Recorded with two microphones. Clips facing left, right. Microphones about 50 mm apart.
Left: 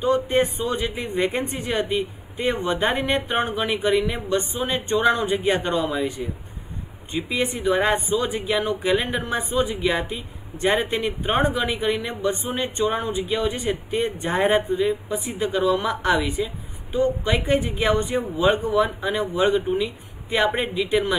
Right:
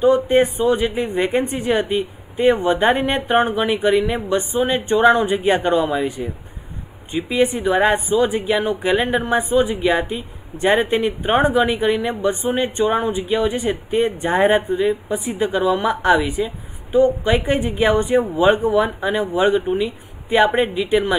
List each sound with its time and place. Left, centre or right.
0.0 s a woman's voice: centre